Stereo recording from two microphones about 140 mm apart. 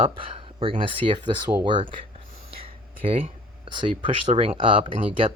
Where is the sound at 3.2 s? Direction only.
35° right (ahead or behind).